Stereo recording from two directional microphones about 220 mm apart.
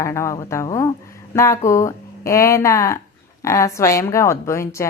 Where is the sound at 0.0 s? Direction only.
15° left (ahead or behind).